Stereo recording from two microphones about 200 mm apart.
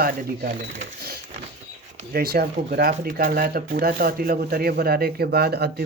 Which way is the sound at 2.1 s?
50° right (ahead or behind).